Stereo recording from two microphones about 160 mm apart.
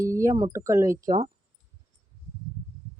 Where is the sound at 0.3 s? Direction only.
20° right (ahead or behind).